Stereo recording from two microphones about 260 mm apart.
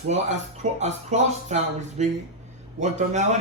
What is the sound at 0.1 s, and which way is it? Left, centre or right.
Speech, right.